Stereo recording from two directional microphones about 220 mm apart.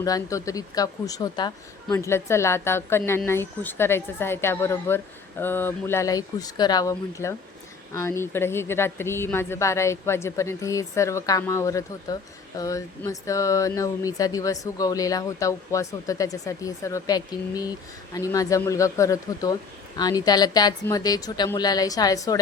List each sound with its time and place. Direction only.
0.0 s speech: 15° left (ahead or behind)